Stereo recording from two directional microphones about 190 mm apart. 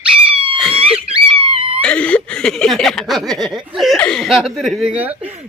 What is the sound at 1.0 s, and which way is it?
Wail, 25° right (ahead or behind).